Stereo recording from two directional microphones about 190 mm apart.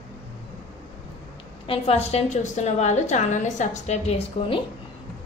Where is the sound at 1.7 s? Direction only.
30° left (ahead or behind).